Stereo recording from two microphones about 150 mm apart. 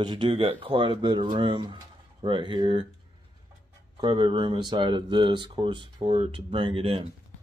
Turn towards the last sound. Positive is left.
turn(degrees=-40)  # may be behind; listen again after turning